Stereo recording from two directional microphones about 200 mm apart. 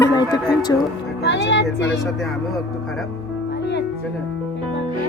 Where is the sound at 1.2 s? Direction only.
60° left (ahead or behind).